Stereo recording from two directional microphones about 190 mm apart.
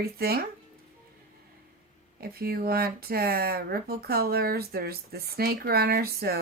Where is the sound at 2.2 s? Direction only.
55° right (ahead or behind).